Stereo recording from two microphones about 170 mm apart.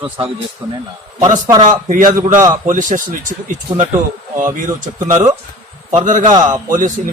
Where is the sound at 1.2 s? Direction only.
45° right (ahead or behind).